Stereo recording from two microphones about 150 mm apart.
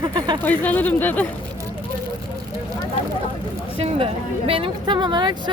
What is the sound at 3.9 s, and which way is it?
Speech, 40° right (ahead or behind).